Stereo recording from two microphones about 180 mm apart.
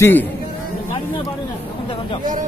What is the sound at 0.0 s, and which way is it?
Speech, 10° left (ahead or behind).